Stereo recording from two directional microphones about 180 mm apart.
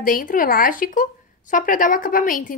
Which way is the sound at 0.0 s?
50° left (ahead or behind).